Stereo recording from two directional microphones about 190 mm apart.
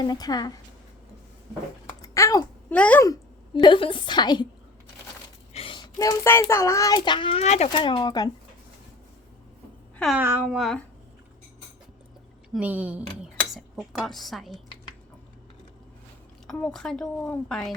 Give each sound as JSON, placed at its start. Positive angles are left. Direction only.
{"t": 0.0, "sound": "speech", "side_deg": 20}
{"t": 2.0, "sound": "a sound", "side_deg": 15}
{"t": 2.7, "sound": "speech", "side_deg": 5}
{"t": 3.0, "sound": "a woman's voice", "side_deg": 20}
{"t": 5.5, "sound": "a child's voice", "side_deg": 25}
{"t": 7.7, "sound": "speech", "side_deg": 25}
{"t": 10.2, "sound": "speech", "side_deg": -10}
{"t": 10.6, "sound": "a woman's voice", "side_deg": 0}
{"t": 12.5, "sound": "speech", "side_deg": -10}
{"t": 16.5, "sound": "a woman's voice", "side_deg": 5}